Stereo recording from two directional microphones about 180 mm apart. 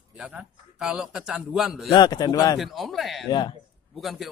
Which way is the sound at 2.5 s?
Centre (ahead or behind).